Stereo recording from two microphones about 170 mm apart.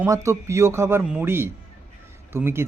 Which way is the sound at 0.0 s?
20° right (ahead or behind).